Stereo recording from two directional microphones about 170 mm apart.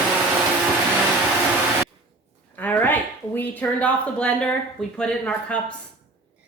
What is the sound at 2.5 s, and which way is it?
Speech, 10° left (ahead or behind).